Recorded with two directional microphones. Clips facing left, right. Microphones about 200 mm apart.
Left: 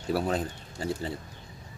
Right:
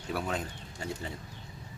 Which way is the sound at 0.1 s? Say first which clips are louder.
Left 6 dB; 35° left (ahead or behind).